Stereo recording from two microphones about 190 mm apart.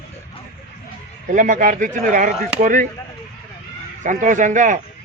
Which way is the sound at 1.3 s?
45° right (ahead or behind).